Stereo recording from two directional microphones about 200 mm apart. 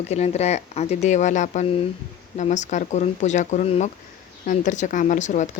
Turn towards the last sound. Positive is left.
turn(degrees=40)  # may be behind; listen again after turning